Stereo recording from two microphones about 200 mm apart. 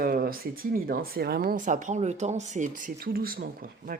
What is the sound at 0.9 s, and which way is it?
Speech, 50° right (ahead or behind).